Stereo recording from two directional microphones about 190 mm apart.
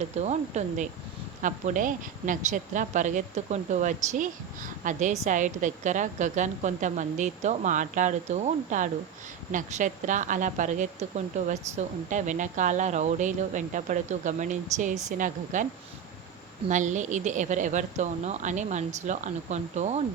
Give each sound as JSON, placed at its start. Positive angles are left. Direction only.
{"t": 0.2, "sound": "a woman's voice", "side_deg": -35}